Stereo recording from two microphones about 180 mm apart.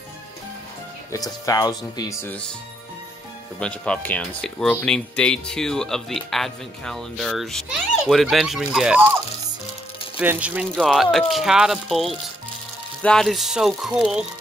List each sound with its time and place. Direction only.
1.1 s speech: 20° left (ahead or behind)
3.5 s speech: 5° left (ahead or behind)